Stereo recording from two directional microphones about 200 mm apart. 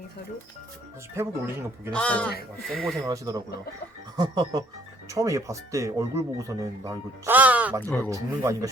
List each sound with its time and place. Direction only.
1.2 s speech: 10° right (ahead or behind)
1.9 s speech: 5° left (ahead or behind)
3.1 s speech: 15° right (ahead or behind)
7.8 s speech: 10° left (ahead or behind)
8.1 s speech: 15° right (ahead or behind)